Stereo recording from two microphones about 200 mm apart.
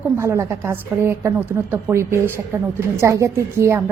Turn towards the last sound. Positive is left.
turn(degrees=-15)  # may be behind; listen again after turning